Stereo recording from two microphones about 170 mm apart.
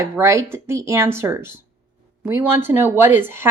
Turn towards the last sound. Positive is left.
turn(degrees=-15)  # may be behind; listen again after turning